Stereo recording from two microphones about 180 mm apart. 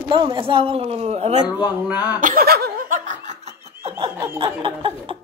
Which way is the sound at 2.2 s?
55° right (ahead or behind).